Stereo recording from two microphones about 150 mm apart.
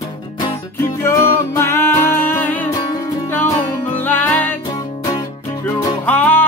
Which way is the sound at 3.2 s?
15° left (ahead or behind).